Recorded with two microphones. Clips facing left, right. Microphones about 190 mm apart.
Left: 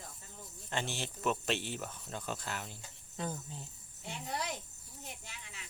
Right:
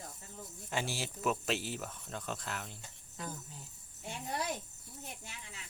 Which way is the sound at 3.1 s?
25° left (ahead or behind).